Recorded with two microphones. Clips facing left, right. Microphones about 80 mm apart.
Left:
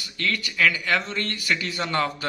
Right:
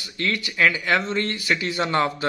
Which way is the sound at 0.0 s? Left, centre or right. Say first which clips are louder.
Right 2 dB; right.